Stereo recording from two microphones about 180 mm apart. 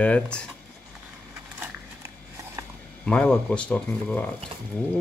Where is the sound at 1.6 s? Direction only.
10° right (ahead or behind).